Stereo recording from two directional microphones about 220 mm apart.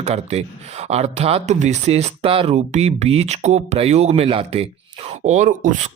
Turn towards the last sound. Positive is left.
turn(degrees=-35)  # may be behind; listen again after turning